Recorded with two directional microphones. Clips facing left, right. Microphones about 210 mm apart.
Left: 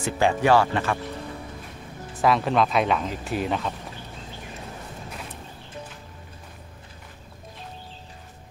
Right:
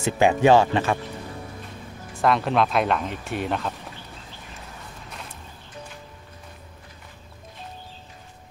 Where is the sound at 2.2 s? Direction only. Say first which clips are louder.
Even; centre (ahead or behind).